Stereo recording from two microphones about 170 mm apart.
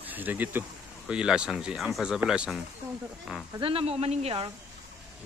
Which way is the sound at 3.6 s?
35° right (ahead or behind).